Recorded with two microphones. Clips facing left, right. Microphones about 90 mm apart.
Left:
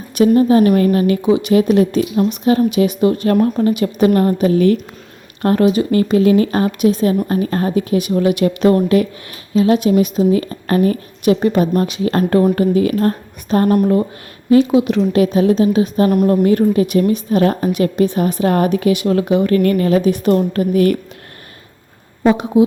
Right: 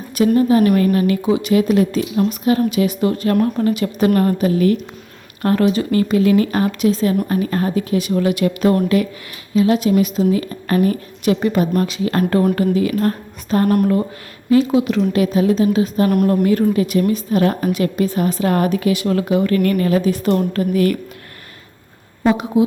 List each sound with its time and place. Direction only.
0.2 s speech: 25° left (ahead or behind)
1.2 s a woman's voice: 20° left (ahead or behind)
19.5 s speech: 35° left (ahead or behind)
20.1 s a woman's voice: 20° left (ahead or behind)
22.2 s a woman's voice: 25° left (ahead or behind)